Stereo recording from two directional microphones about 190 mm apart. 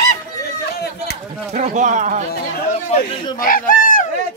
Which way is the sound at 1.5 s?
40° right (ahead or behind).